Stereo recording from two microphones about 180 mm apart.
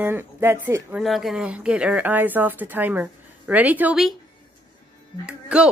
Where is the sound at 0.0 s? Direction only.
10° right (ahead or behind).